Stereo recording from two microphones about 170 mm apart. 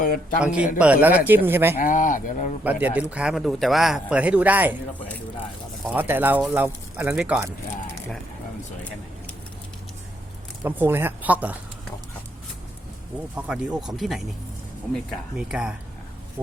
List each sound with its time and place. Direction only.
0.0 s speech: 55° left (ahead or behind)
0.3 s speech: 5° right (ahead or behind)
1.8 s speech: 50° left (ahead or behind)
2.6 s speech: 10° right (ahead or behind)
5.9 s speech: 10° right (ahead or behind)
10.6 s speech: 10° right (ahead or behind)
13.3 s speech: 5° right (ahead or behind)